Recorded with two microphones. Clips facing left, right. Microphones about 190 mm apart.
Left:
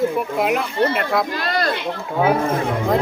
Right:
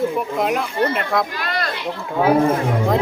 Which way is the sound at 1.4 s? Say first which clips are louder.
Left 3 dB; 35° left (ahead or behind).